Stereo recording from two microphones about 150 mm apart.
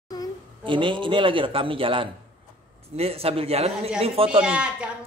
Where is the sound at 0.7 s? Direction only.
35° right (ahead or behind).